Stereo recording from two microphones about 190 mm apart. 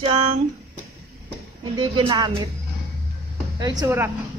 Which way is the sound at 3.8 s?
15° right (ahead or behind).